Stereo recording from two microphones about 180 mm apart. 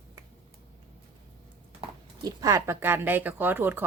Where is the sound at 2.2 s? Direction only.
20° right (ahead or behind).